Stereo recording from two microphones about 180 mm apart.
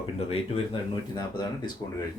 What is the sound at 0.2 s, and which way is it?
Speech, 30° left (ahead or behind).